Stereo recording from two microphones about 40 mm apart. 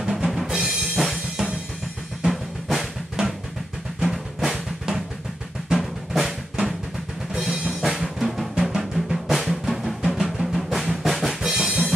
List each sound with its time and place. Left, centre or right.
0.0 s drum: centre
0.5 s music: centre
2.2 s drum: centre
4.0 s drum: centre
7.3 s music: centre
8.2 s drum: centre
11.4 s drum kit: centre